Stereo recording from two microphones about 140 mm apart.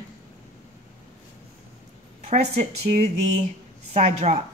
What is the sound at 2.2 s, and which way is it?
Speech, 55° right (ahead or behind).